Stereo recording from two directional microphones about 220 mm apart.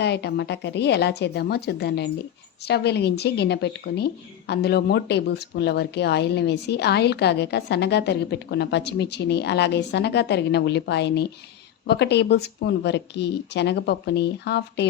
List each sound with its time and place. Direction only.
0.0 s speech: 50° left (ahead or behind)